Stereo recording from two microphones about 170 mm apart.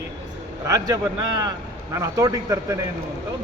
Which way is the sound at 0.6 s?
20° right (ahead or behind).